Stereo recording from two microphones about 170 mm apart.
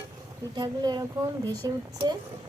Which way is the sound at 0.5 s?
25° right (ahead or behind).